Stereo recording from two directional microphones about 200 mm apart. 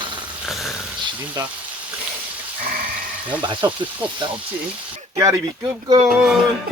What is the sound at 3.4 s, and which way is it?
Speech, 25° right (ahead or behind).